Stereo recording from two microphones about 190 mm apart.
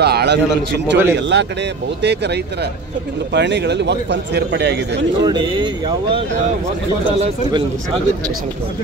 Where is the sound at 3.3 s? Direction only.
65° right (ahead or behind).